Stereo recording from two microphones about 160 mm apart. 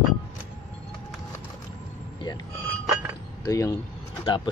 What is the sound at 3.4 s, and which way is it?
Speech, 20° left (ahead or behind).